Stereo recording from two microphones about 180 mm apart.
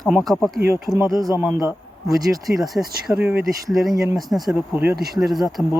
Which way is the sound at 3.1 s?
15° right (ahead or behind).